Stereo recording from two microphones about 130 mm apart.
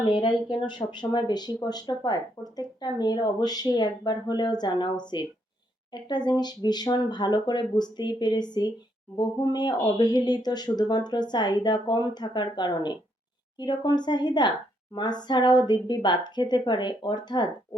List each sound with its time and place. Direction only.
0.0 s speech: 35° left (ahead or behind)